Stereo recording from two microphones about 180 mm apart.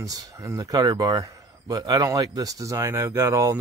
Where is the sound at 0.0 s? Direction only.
20° right (ahead or behind).